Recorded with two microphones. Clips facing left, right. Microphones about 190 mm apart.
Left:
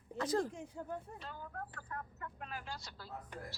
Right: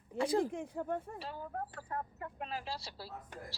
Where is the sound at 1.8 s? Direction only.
30° right (ahead or behind).